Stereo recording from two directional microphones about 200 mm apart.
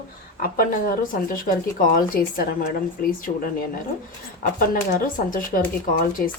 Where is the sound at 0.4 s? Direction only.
45° left (ahead or behind).